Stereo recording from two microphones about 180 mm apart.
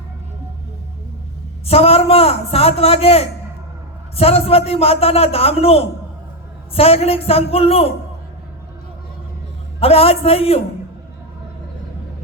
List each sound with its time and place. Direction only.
1.6 s a man's voice: 35° left (ahead or behind)
9.8 s a man's voice: 35° left (ahead or behind)